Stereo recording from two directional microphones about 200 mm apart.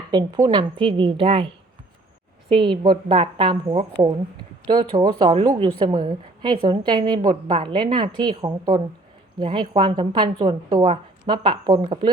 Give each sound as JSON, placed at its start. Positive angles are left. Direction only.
{"t": 0.1, "sound": "a woman's voice", "side_deg": -20}